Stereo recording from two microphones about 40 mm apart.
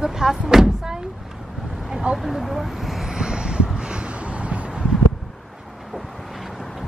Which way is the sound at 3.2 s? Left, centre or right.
Right.